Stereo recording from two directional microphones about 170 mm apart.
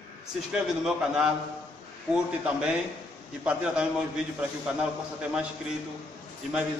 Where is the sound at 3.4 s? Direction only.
5° right (ahead or behind).